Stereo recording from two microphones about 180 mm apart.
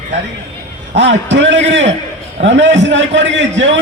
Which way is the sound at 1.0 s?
90° right.